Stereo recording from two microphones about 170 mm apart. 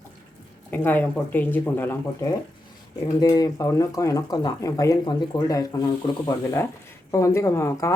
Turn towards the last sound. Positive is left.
turn(degrees=15)  # may be behind; listen again after turning